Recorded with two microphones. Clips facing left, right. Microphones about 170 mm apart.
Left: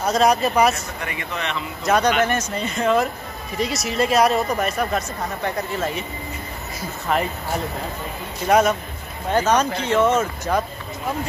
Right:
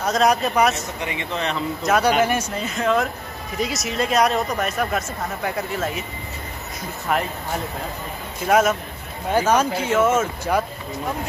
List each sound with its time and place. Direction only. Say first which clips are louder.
0.0 s speech: left 1 dB; centre (ahead or behind)
0.7 s speech: right 2 dB; 20° right (ahead or behind)
1.9 s speech: even; 5° right (ahead or behind)
8.5 s speech: left 1 dB; centre (ahead or behind)